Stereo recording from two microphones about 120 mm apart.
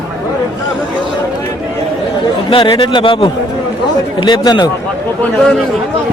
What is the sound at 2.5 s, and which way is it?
A man's voice, 45° left (ahead or behind).